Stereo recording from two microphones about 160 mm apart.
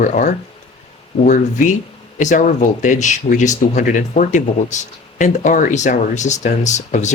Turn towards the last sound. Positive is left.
turn(degrees=50)  # may be behind; listen again after turning